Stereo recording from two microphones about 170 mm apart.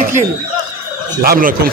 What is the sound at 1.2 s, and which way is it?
Speech, 55° right (ahead or behind).